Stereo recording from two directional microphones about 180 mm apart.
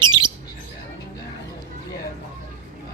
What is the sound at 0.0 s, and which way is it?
Bird, 25° right (ahead or behind).